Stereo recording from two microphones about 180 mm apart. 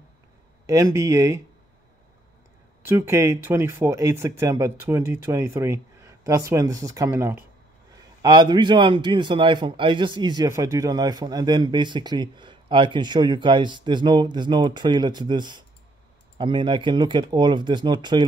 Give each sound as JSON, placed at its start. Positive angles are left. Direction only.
{"t": 0.7, "sound": "speech", "side_deg": -20}
{"t": 2.8, "sound": "a man's voice", "side_deg": -15}